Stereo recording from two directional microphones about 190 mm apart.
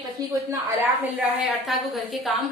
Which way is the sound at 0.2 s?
20° right (ahead or behind).